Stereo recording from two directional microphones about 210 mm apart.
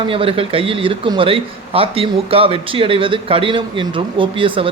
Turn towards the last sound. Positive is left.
turn(degrees=-25)  # may be behind; listen again after turning